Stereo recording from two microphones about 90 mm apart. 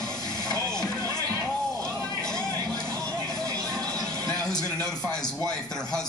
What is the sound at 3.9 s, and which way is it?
Music, 10° left (ahead or behind).